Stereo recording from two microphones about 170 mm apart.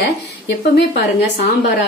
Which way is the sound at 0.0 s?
70° left (ahead or behind).